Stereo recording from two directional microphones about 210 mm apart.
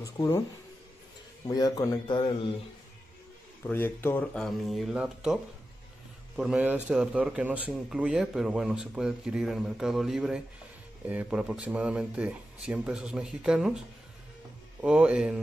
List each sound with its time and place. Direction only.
0.0 s speech: 15° left (ahead or behind)
1.5 s speech: 15° left (ahead or behind)
3.6 s a man's voice: 10° left (ahead or behind)